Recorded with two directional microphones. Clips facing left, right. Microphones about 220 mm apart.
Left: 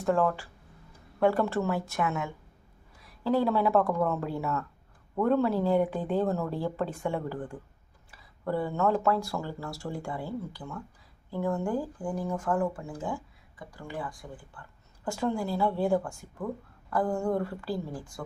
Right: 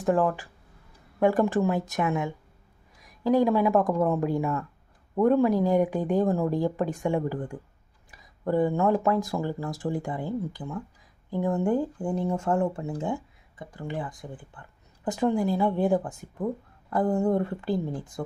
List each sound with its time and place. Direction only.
0.0 s a woman's voice: 15° right (ahead or behind)